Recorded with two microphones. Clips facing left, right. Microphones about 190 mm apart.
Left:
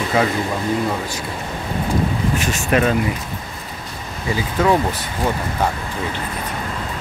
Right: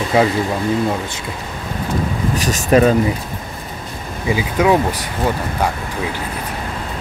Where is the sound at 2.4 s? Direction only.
40° right (ahead or behind).